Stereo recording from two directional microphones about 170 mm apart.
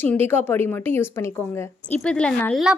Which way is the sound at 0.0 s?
10° left (ahead or behind).